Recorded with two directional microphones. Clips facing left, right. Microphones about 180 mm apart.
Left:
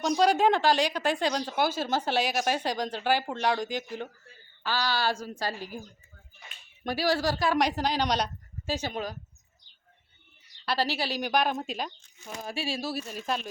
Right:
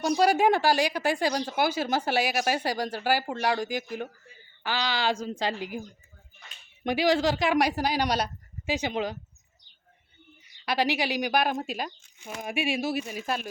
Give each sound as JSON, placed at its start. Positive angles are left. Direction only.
{"t": 0.0, "sound": "speech", "side_deg": -10}
{"t": 6.8, "sound": "speech", "side_deg": -20}
{"t": 7.6, "sound": "speech", "side_deg": -10}
{"t": 10.7, "sound": "speech", "side_deg": -15}